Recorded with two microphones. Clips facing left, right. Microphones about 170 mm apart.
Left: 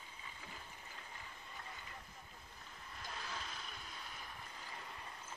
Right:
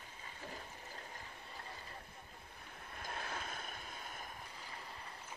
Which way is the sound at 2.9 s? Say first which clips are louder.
Right 3 dB; 55° right (ahead or behind).